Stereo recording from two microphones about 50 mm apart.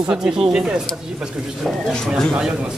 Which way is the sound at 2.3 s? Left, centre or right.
Centre.